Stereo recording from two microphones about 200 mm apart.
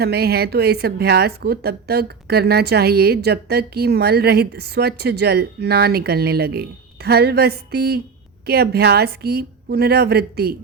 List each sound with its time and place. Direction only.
0.0 s a woman's voice: 55° right (ahead or behind)